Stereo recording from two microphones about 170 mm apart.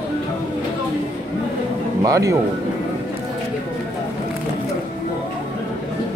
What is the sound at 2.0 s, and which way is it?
Speech, 20° right (ahead or behind).